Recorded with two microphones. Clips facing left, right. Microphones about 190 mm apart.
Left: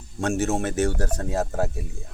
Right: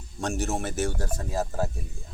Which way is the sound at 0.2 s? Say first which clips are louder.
Left 5 dB; 65° left (ahead or behind).